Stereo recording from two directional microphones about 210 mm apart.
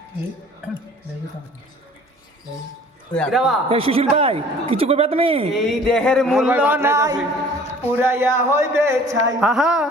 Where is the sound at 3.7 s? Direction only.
25° right (ahead or behind).